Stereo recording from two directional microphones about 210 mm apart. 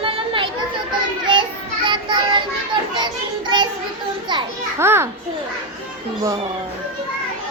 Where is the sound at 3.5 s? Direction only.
20° right (ahead or behind).